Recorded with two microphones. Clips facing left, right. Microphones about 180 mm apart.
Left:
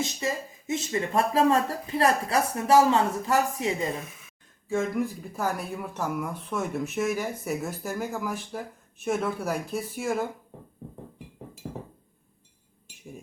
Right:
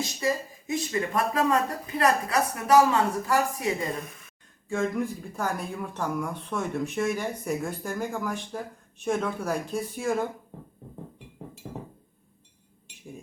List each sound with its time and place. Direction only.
0.2 s speech: 20° left (ahead or behind)
4.0 s speech: centre (ahead or behind)